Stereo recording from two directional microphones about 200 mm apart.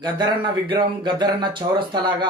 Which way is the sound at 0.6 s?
25° right (ahead or behind).